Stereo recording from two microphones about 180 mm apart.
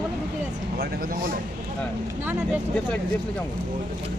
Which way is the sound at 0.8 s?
50° right (ahead or behind).